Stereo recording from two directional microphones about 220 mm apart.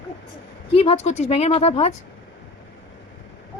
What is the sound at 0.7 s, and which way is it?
Speech, 30° left (ahead or behind).